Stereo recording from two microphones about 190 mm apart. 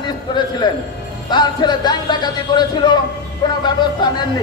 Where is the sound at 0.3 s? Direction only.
25° left (ahead or behind).